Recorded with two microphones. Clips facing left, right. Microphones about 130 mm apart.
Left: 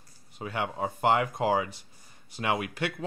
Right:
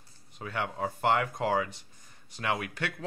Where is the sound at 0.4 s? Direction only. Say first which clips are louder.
Left 2 dB; 15° left (ahead or behind).